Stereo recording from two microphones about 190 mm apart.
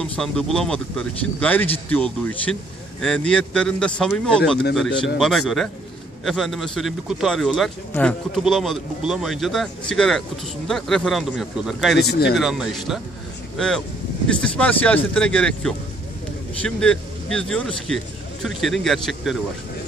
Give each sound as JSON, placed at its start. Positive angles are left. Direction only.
{"t": 0.0, "sound": "a man's voice", "side_deg": 5}
{"t": 12.0, "sound": "speech", "side_deg": 60}
{"t": 12.4, "sound": "a man's voice", "side_deg": 0}